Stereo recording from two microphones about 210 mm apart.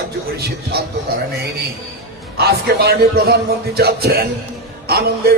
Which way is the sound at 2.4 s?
50° right (ahead or behind).